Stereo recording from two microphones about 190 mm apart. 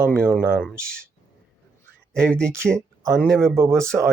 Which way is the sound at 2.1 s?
5° left (ahead or behind).